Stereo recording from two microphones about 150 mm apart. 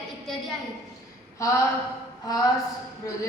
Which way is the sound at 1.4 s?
20° left (ahead or behind).